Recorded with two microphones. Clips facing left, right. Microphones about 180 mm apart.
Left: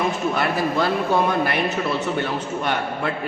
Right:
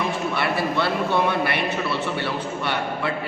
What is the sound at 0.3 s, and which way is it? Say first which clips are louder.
A man's voice: even; 45° left (ahead or behind).